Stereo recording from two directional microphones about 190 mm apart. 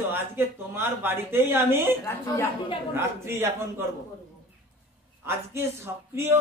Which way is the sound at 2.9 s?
15° right (ahead or behind).